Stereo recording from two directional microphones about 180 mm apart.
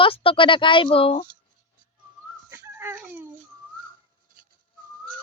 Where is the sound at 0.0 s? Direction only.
30° left (ahead or behind).